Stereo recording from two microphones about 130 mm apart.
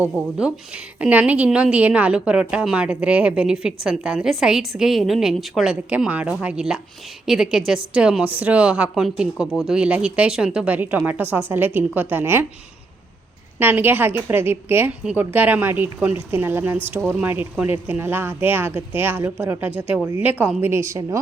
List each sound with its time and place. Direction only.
0.0 s a woman's voice: 10° right (ahead or behind)
13.6 s a woman's voice: 15° right (ahead or behind)